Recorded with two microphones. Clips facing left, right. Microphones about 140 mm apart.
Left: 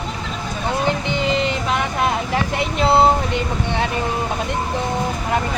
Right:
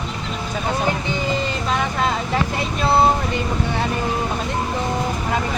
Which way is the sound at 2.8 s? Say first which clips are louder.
Left 2 dB; 20° left (ahead or behind).